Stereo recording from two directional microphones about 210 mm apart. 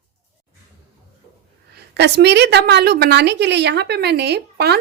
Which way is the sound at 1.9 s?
55° right (ahead or behind).